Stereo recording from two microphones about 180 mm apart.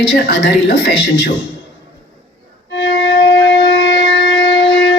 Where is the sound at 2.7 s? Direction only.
90° left.